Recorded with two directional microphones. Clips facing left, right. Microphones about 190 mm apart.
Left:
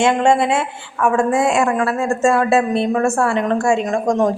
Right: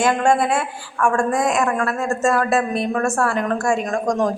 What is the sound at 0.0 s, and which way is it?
A woman's voice, 25° left (ahead or behind).